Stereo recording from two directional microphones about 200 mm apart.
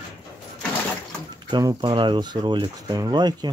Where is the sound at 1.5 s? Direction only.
20° right (ahead or behind).